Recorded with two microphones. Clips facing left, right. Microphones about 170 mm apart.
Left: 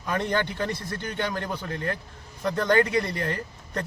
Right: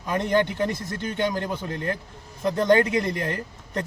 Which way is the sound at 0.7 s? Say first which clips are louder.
Right 2 dB; 45° right (ahead or behind).